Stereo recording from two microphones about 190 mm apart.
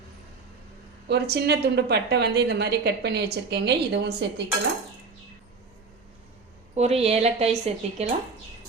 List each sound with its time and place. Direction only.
1.0 s a woman's voice: 60° right (ahead or behind)
6.7 s a woman's voice: 35° right (ahead or behind)